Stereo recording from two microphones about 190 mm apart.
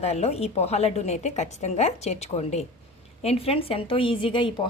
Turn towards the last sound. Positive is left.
turn(degrees=25)  # may be behind; listen again after turning